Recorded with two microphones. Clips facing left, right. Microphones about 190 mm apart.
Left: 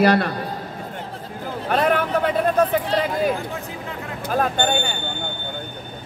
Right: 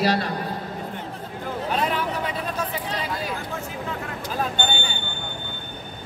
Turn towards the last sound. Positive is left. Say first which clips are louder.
# left 5 dB
turn(degrees=55)  # may be behind; listen again after turning